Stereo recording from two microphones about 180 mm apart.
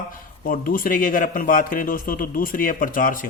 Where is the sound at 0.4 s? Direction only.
50° left (ahead or behind).